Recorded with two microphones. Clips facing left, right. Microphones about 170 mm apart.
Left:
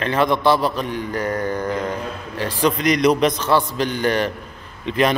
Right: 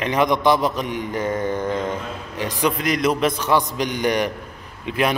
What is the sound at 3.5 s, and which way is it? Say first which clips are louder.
A man's voice: left 1 dB; 15° right (ahead or behind).